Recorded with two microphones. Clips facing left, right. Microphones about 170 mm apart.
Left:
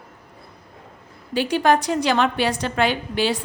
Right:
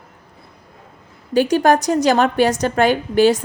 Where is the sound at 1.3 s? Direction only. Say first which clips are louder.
Right 4 dB; 45° right (ahead or behind).